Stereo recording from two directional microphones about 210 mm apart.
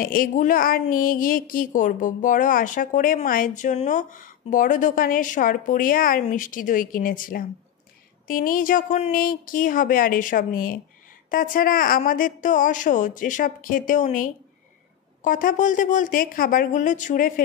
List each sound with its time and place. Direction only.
0.0 s a woman's voice: 40° left (ahead or behind)